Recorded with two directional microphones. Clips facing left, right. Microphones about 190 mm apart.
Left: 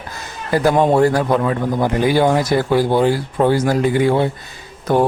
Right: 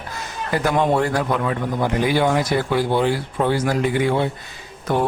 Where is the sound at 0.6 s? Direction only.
35° left (ahead or behind).